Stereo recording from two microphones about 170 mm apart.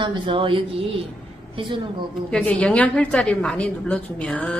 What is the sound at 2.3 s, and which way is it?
A woman's voice, 5° left (ahead or behind).